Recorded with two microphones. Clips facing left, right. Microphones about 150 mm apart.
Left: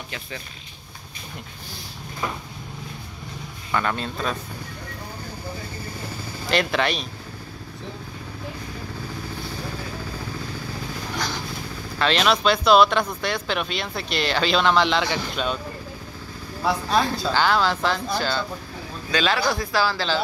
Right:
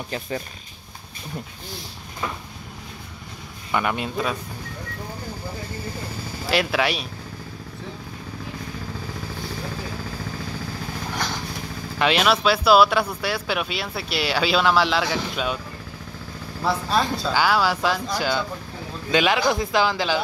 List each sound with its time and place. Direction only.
3.7 s speech: 15° right (ahead or behind)
6.5 s speech: 5° right (ahead or behind)
12.0 s speech: 10° right (ahead or behind)
16.6 s speech: centre (ahead or behind); by 20.2 s 15° right (ahead or behind)